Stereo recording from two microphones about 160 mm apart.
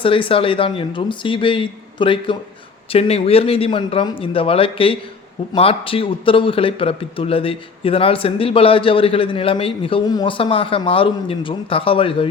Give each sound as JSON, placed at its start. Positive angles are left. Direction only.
{"t": 0.0, "sound": "a man's voice", "side_deg": 35}